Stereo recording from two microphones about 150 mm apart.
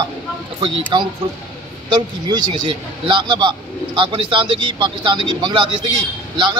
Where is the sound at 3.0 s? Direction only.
30° right (ahead or behind).